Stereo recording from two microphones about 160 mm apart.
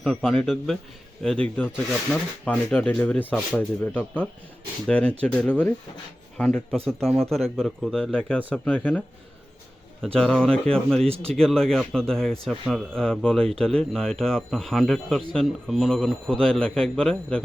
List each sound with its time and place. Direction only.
0.0 s a man's voice: centre (ahead or behind)
10.2 s a man's voice: 5° left (ahead or behind)
11.1 s speech: 40° right (ahead or behind)
11.3 s a man's voice: 5° left (ahead or behind)